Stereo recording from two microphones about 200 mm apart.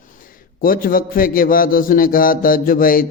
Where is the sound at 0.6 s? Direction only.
45° left (ahead or behind).